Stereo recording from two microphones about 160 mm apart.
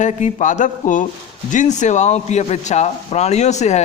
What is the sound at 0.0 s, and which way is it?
A man's voice, 50° left (ahead or behind).